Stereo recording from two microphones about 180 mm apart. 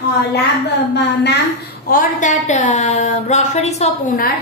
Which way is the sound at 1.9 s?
45° left (ahead or behind).